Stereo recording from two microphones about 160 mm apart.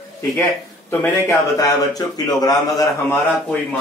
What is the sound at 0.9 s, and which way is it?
Speech, 15° left (ahead or behind).